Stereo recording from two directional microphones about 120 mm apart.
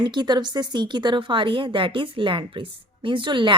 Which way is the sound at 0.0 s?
40° right (ahead or behind).